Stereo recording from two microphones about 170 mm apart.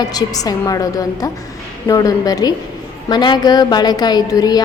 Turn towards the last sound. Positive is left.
turn(degrees=20)  # may be behind; listen again after turning